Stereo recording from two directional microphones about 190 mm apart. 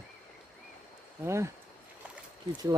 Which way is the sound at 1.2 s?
15° right (ahead or behind).